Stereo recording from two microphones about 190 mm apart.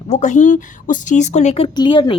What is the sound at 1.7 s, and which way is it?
Speech, 25° left (ahead or behind).